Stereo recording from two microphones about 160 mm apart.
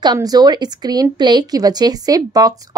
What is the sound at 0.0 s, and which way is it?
Speech, 25° right (ahead or behind).